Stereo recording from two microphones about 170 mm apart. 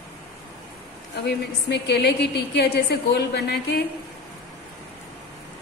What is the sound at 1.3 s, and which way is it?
A woman's voice, 80° left.